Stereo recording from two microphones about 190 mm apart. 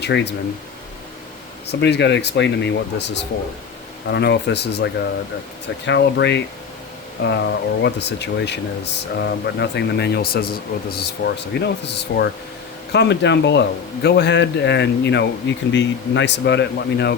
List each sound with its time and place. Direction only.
0.0 s speech: 60° left (ahead or behind)
1.8 s speech: 65° left (ahead or behind)